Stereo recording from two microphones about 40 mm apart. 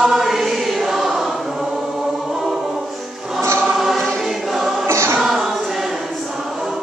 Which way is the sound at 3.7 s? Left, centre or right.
Centre.